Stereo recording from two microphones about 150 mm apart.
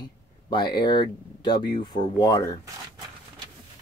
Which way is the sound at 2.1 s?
25° left (ahead or behind).